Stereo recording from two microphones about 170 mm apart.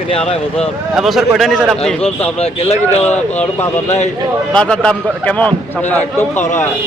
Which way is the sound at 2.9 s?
10° left (ahead or behind).